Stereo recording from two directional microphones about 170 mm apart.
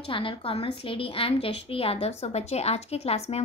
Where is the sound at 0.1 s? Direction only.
30° left (ahead or behind).